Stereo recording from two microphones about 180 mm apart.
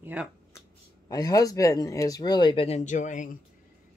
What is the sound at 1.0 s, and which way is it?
Speech, 20° left (ahead or behind).